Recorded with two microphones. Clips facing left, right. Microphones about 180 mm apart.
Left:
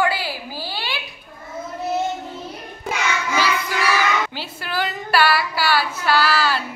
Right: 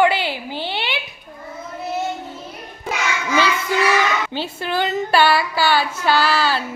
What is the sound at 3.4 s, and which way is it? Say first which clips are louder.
Child singing: right 5 dB; 25° right (ahead or behind).